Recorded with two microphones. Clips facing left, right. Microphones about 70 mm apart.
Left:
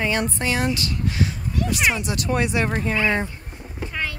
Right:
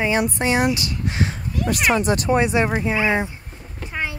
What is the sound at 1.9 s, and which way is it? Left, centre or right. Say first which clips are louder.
Speech: right 7 dB; right.